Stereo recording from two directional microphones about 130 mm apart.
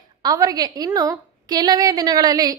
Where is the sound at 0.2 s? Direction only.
30° right (ahead or behind).